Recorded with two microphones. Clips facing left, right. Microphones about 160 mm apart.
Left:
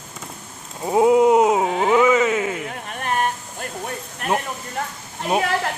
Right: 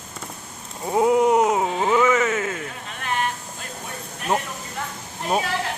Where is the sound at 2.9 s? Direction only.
45° left (ahead or behind).